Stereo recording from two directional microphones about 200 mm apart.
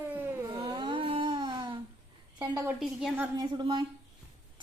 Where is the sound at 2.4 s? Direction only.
15° right (ahead or behind).